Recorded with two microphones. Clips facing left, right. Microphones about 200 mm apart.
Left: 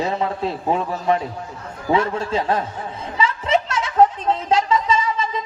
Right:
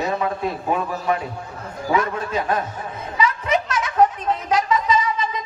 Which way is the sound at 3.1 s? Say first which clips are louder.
Left 1 dB; 25° left (ahead or behind).